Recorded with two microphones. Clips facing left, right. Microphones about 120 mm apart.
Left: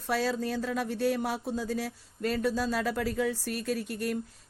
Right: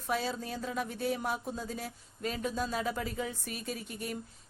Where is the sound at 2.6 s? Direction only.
70° left (ahead or behind).